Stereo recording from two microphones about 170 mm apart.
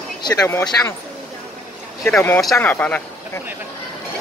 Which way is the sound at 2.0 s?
10° left (ahead or behind).